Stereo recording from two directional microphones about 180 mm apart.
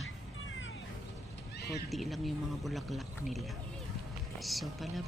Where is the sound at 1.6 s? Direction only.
65° left (ahead or behind).